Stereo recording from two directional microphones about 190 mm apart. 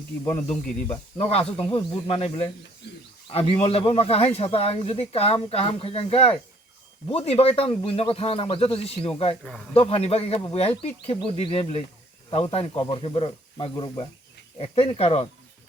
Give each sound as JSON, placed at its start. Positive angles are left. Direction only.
{"t": 0.3, "sound": "speech", "side_deg": 30}